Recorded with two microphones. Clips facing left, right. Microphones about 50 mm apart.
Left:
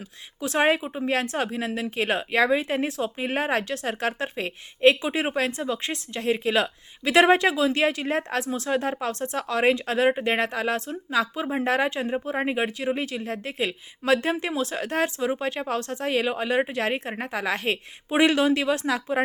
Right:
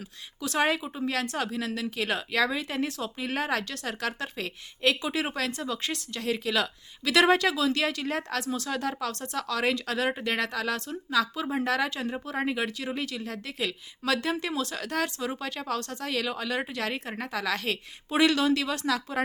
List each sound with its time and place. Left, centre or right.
0.4 s a woman's voice: left